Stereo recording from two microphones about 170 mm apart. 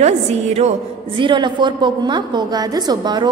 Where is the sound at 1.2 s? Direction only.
25° right (ahead or behind).